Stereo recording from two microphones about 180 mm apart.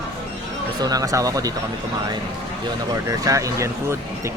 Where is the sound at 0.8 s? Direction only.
20° right (ahead or behind).